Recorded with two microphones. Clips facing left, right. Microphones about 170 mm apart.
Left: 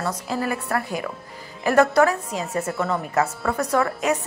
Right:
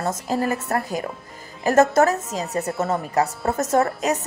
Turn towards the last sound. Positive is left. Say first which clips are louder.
# right 1 dB
turn(degrees=-40)  # may be behind; listen again after turning